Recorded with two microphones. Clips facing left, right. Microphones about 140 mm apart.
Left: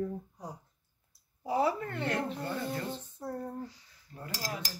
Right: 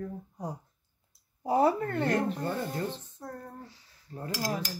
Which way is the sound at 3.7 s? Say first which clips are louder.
Right 4 dB; 35° right (ahead or behind).